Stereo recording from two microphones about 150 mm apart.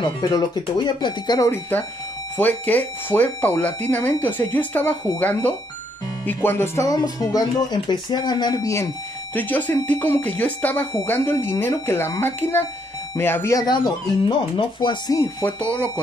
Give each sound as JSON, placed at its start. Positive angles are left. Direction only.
{"t": 0.0, "sound": "speech", "side_deg": 30}
{"t": 1.5, "sound": "speech", "side_deg": 10}
{"t": 15.1, "sound": "speech", "side_deg": 10}